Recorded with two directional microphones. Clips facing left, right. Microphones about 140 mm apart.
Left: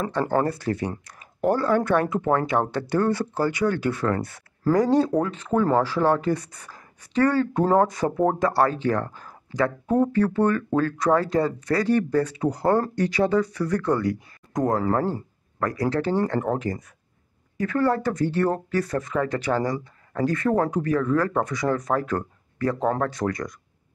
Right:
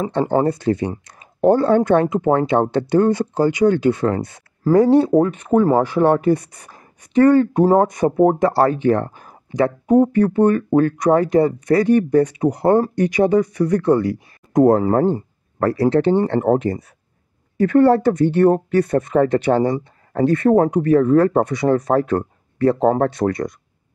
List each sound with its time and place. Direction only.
0.0 s speech: 20° right (ahead or behind)